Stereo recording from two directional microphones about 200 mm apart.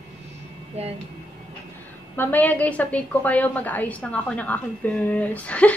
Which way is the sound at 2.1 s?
10° left (ahead or behind).